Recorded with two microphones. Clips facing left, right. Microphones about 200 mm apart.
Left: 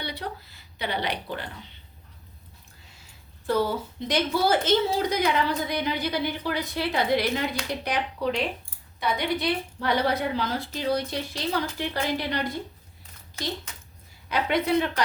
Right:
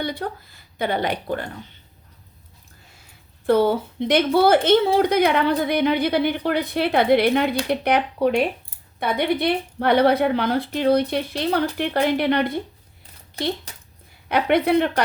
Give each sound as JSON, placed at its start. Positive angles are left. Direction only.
{"t": 0.0, "sound": "a woman's voice", "side_deg": -50}
{"t": 3.4, "sound": "a woman's voice", "side_deg": -60}
{"t": 13.7, "sound": "a sound", "side_deg": -35}
{"t": 14.3, "sound": "a woman's voice", "side_deg": -60}